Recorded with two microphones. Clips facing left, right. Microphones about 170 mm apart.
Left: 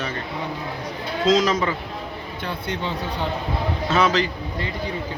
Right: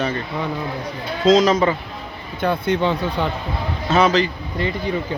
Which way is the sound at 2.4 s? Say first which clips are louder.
Right 10 dB; 55° right (ahead or behind).